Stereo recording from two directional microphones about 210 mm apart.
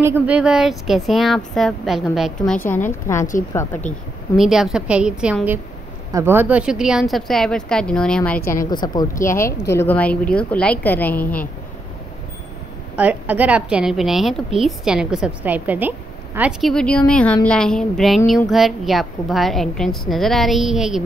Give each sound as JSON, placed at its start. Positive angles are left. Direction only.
{"t": 0.0, "sound": "a woman's voice", "side_deg": -10}
{"t": 4.4, "sound": "a woman's voice", "side_deg": 0}
{"t": 8.4, "sound": "a woman's voice", "side_deg": 40}
{"t": 8.6, "sound": "speech", "side_deg": 20}
{"t": 12.9, "sound": "a woman's voice", "side_deg": -5}